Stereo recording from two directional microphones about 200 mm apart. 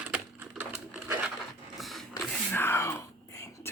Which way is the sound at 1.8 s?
Centre (ahead or behind).